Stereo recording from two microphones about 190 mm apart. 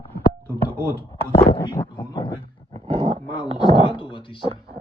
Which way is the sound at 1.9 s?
25° left (ahead or behind).